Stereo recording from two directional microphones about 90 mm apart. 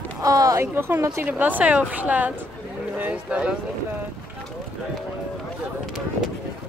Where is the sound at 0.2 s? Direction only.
40° right (ahead or behind).